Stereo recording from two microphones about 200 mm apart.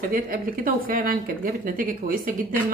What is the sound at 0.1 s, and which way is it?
Speech, 45° right (ahead or behind).